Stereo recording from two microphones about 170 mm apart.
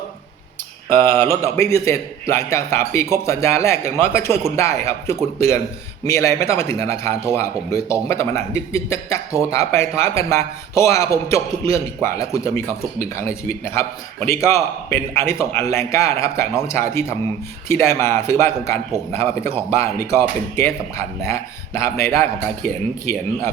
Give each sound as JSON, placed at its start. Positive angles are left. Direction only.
{"t": 0.9, "sound": "mantra", "side_deg": 15}
{"t": 1.5, "sound": "a man's voice", "side_deg": 15}
{"t": 13.5, "sound": "a man's voice", "side_deg": 15}